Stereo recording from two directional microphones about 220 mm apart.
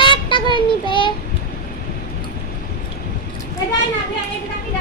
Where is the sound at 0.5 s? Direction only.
20° left (ahead or behind).